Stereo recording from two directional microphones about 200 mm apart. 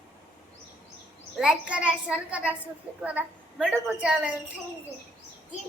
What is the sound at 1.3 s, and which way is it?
A woman's voice, 5° right (ahead or behind).